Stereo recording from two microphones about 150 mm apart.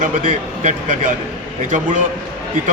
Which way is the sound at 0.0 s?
60° right (ahead or behind).